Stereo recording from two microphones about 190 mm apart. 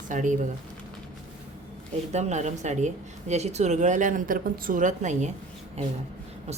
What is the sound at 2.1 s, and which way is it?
A woman's voice, 35° right (ahead or behind).